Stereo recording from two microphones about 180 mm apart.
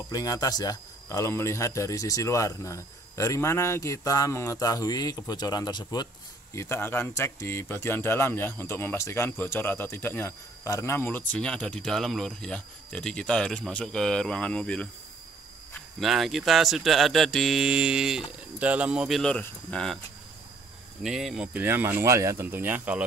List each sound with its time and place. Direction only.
0.1 s speech: 20° left (ahead or behind); by 20.0 s 5° left (ahead or behind)
21.0 s speech: centre (ahead or behind)